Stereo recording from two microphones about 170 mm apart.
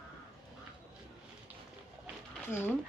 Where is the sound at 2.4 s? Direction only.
15° left (ahead or behind).